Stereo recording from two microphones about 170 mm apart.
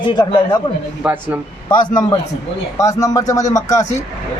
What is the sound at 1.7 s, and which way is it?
Speech, 25° left (ahead or behind).